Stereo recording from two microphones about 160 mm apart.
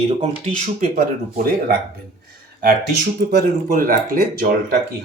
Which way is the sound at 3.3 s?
75° right (ahead or behind).